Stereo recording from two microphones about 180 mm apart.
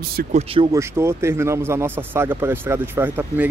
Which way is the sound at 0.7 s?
15° right (ahead or behind).